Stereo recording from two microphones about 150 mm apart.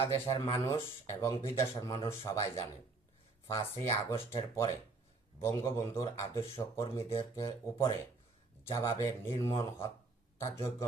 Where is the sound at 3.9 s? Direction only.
20° left (ahead or behind).